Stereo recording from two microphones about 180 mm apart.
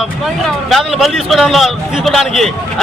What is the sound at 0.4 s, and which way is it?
A man's voice, centre (ahead or behind).